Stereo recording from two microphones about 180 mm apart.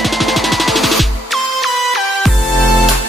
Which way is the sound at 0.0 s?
Centre (ahead or behind).